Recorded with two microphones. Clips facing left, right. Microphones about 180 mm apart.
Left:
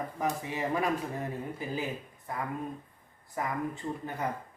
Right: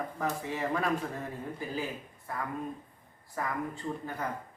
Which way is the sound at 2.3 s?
20° left (ahead or behind).